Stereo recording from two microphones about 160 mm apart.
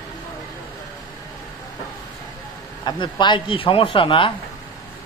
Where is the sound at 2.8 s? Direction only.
30° left (ahead or behind).